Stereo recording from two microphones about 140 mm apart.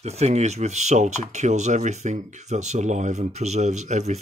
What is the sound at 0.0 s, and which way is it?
Speech, 50° right (ahead or behind).